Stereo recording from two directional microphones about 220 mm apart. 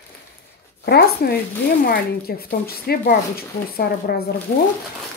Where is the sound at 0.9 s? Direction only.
45° left (ahead or behind).